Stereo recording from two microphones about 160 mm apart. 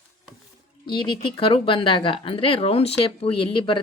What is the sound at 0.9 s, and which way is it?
A woman's voice, 30° left (ahead or behind).